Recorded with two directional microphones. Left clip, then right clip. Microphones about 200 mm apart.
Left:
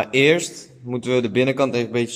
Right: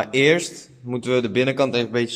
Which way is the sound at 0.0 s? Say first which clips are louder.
Left 1 dB; centre (ahead or behind).